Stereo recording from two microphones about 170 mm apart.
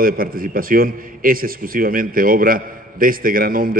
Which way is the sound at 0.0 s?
60° right (ahead or behind).